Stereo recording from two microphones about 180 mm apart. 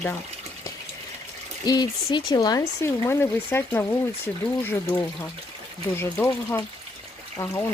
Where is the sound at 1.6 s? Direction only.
25° left (ahead or behind).